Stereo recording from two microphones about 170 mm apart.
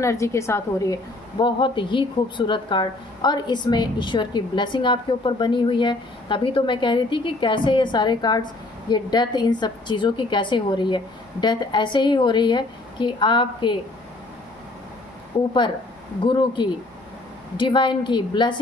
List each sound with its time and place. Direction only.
0.0 s a woman's voice: 15° left (ahead or behind)
1.4 s a woman's voice: 30° left (ahead or behind)
16.3 s a woman's voice: 25° left (ahead or behind)